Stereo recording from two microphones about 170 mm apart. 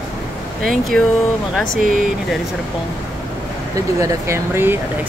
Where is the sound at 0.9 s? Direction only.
5° left (ahead or behind).